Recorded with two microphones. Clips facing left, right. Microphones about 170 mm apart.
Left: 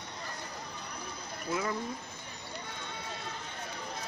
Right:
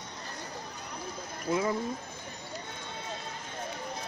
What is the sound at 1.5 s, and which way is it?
Speech, 20° right (ahead or behind).